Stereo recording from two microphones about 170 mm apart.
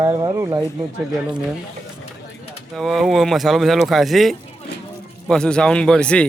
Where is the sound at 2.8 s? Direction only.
Centre (ahead or behind).